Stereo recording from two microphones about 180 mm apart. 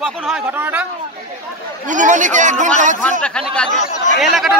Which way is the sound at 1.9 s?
45° right (ahead or behind).